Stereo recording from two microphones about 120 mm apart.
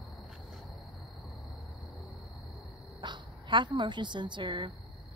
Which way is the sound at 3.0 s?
40° right (ahead or behind).